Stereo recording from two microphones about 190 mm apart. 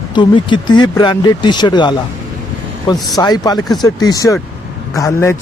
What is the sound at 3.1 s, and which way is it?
Speech, 20° left (ahead or behind).